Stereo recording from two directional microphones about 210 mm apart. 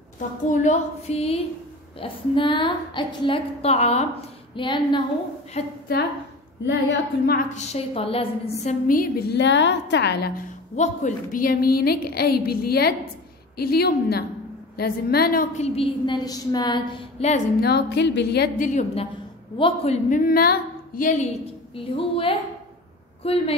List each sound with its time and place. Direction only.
0.5 s a woman's voice: 35° left (ahead or behind)
6.6 s a woman's voice: 50° left (ahead or behind)
7.5 s a woman's voice: 30° left (ahead or behind)
8.8 s a woman's voice: 45° left (ahead or behind)
10.8 s a woman's voice: 35° left (ahead or behind)
15.5 s a woman's voice: 30° left (ahead or behind)
17.6 s a woman's voice: 50° left (ahead or behind)
18.7 s a woman's voice: 35° left (ahead or behind)